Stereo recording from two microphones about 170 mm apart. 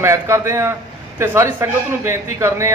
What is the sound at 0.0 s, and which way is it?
A man's voice, 15° right (ahead or behind).